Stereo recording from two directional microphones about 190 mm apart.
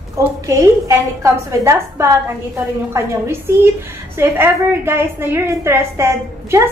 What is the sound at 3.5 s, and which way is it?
A woman's voice, 10° right (ahead or behind).